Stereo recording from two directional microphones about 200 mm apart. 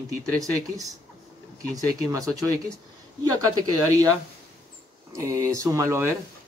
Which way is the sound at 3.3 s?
20° right (ahead or behind).